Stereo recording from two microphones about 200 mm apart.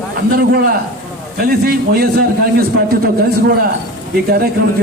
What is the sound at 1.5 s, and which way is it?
A man's voice, 50° right (ahead or behind).